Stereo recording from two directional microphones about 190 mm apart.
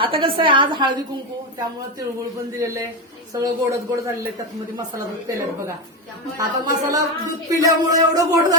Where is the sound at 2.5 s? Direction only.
15° right (ahead or behind).